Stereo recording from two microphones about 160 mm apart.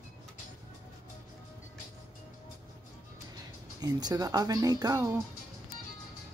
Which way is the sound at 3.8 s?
25° right (ahead or behind).